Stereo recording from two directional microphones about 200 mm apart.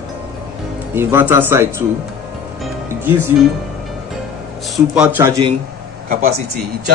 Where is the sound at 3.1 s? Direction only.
10° right (ahead or behind).